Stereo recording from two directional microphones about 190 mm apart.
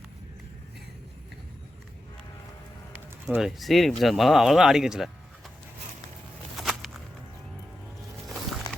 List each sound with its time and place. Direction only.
3.2 s speech: centre (ahead or behind)
6.6 s a sound: centre (ahead or behind)
8.7 s music: 20° left (ahead or behind)